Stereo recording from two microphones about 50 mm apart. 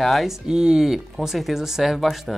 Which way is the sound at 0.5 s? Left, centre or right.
Centre.